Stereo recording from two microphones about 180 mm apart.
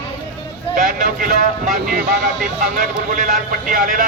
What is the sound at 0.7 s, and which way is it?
A man's voice, 45° right (ahead or behind).